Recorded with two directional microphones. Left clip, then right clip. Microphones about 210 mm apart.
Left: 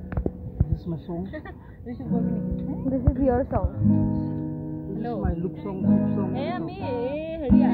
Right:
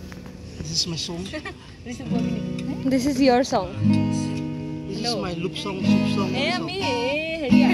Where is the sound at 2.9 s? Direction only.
40° right (ahead or behind).